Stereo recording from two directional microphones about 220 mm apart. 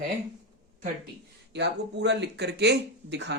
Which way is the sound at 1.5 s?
50° right (ahead or behind).